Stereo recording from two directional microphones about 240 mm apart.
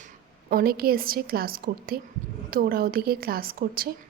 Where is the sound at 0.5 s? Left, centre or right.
Right.